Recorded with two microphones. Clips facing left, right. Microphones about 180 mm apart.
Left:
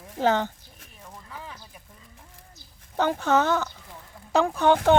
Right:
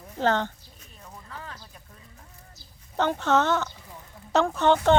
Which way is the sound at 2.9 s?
5° left (ahead or behind).